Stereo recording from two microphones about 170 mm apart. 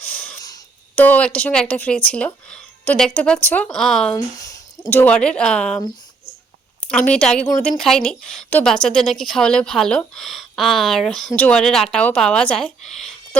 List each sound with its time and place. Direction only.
0.4 s a sound: 20° left (ahead or behind)
1.0 s speech: 10° left (ahead or behind)
4.8 s speech: 10° left (ahead or behind)
6.9 s speech: 5° left (ahead or behind)